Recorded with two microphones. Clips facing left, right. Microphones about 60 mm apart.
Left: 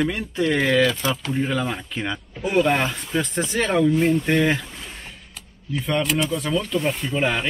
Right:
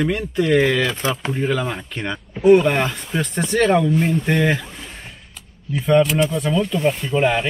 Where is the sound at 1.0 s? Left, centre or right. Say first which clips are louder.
Right 2 dB; right.